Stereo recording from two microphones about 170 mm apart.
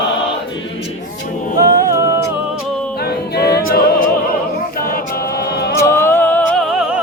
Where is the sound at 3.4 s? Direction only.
65° left (ahead or behind).